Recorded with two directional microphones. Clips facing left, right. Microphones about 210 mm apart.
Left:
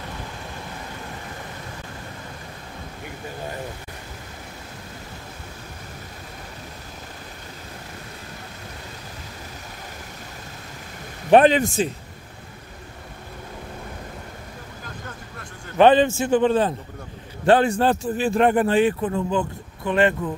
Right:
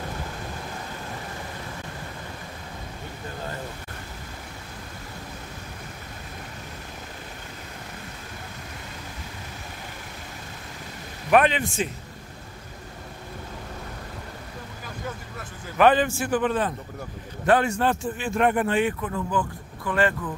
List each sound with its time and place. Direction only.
11.2 s a man's voice: 30° left (ahead or behind)
15.8 s a man's voice: 25° left (ahead or behind)